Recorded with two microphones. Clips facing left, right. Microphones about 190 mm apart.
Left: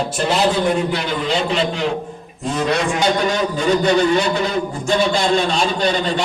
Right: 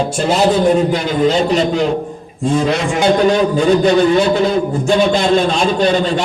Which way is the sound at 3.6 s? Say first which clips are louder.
Right 3 dB; 50° right (ahead or behind).